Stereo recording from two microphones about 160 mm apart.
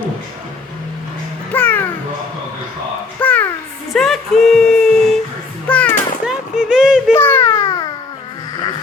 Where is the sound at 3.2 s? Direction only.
10° left (ahead or behind).